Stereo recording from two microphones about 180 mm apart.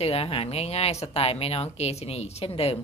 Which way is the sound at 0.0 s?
35° left (ahead or behind).